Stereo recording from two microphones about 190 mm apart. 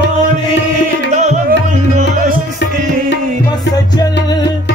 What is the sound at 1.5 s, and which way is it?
Tabla, 50° right (ahead or behind).